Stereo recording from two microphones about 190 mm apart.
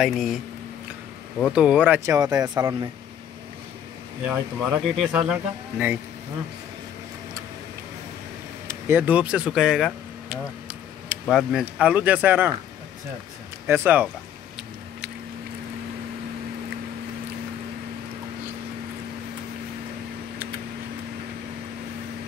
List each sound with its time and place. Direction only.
0.0 s speech: centre (ahead or behind)
1.4 s speech: 5° right (ahead or behind)
2.1 s speech: 20° right (ahead or behind)
4.3 s speech: centre (ahead or behind)
8.6 s speech: 10° right (ahead or behind)
13.7 s speech: 10° right (ahead or behind)